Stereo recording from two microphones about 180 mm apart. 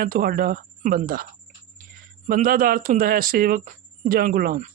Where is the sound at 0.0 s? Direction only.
55° right (ahead or behind).